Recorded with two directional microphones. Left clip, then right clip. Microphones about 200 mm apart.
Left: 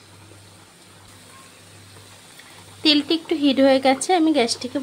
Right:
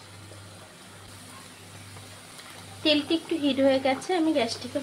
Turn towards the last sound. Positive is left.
turn(degrees=55)  # may be behind; listen again after turning